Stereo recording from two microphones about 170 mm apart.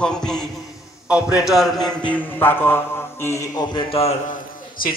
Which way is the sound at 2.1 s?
10° left (ahead or behind).